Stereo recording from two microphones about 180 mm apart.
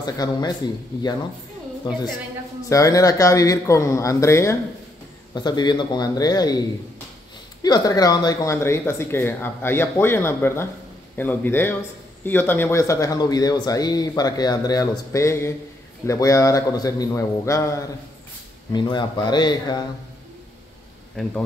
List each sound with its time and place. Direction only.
0.0 s speech: 20° left (ahead or behind)
2.7 s speech: 20° left (ahead or behind)
7.6 s speech: 20° left (ahead or behind)